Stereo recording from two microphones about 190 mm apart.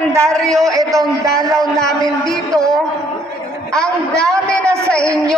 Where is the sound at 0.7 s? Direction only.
15° right (ahead or behind).